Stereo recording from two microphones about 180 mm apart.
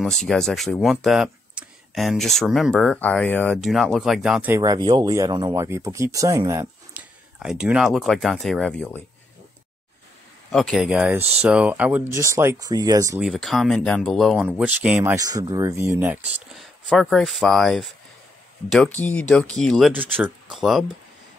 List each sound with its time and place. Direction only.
0.0 s speech: 5° left (ahead or behind)
4.6 s speech: 20° right (ahead or behind)
6.9 s speech: 5° right (ahead or behind)
10.5 s speech: centre (ahead or behind); by 13.2 s 20° right (ahead or behind)
13.2 s speech: centre (ahead or behind)
15.2 s speech: 20° right (ahead or behind)
16.5 s speech: centre (ahead or behind)
20.0 s speech: 10° right (ahead or behind)